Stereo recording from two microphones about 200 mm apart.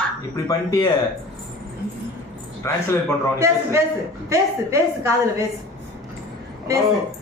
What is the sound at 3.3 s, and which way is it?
A woman's voice, 15° right (ahead or behind).